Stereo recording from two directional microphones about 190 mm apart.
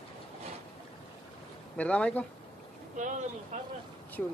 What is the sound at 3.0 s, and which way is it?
Speech, 40° right (ahead or behind).